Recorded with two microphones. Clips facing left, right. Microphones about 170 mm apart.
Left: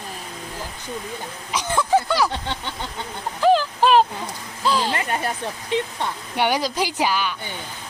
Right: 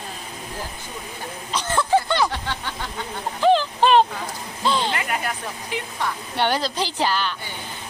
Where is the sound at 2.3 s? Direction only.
20° left (ahead or behind).